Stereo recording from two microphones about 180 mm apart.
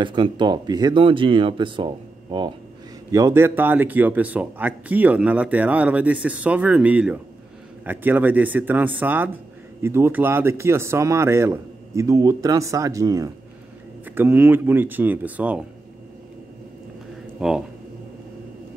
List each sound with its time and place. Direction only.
0.0 s speech: 25° right (ahead or behind); by 15.6 s 10° right (ahead or behind)
17.4 s speech: 5° right (ahead or behind)